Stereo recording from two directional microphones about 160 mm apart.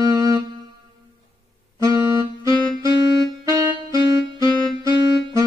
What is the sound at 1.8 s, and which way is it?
Music, 20° right (ahead or behind).